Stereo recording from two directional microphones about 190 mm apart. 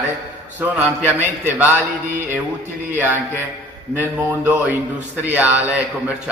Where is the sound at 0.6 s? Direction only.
10° right (ahead or behind).